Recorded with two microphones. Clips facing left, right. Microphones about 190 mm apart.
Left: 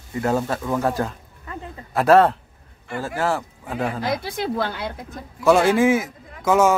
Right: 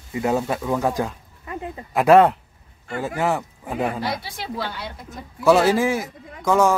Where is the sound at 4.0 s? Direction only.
50° left (ahead or behind).